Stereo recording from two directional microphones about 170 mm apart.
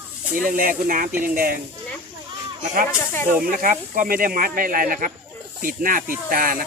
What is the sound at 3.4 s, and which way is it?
Speech, 55° right (ahead or behind).